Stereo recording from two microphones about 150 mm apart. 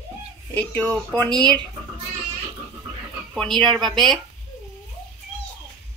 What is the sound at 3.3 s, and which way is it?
Speech, centre (ahead or behind).